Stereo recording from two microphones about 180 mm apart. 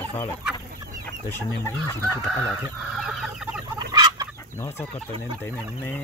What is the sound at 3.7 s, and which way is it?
Fowl, 20° right (ahead or behind).